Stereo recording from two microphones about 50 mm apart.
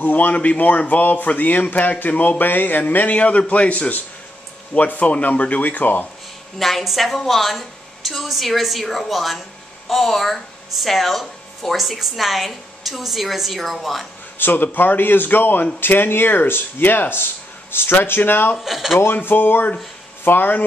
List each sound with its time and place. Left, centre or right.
0.0 s speech: left
6.6 s speech: centre
14.4 s speech: left
18.6 s speech: centre
19.1 s speech: left